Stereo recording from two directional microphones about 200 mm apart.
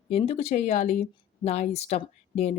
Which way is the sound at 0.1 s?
30° left (ahead or behind).